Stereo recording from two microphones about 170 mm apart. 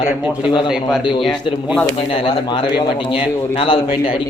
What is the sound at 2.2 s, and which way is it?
A man's voice, 30° left (ahead or behind).